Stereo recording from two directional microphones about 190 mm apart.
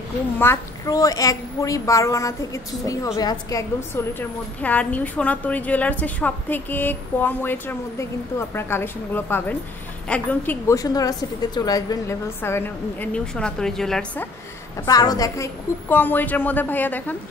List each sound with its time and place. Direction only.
0.4 s a woman's voice: 15° left (ahead or behind)
14.9 s a woman's voice: 20° left (ahead or behind)